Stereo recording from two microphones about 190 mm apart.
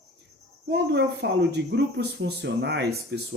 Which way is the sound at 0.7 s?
60° right (ahead or behind).